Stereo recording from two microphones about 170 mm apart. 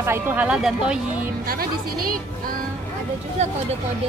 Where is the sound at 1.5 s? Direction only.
60° right (ahead or behind).